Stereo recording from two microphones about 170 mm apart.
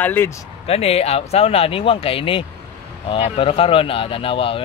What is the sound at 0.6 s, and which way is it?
A man's voice, 35° left (ahead or behind).